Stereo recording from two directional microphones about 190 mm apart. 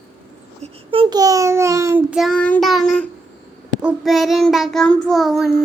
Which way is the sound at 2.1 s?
Centre (ahead or behind).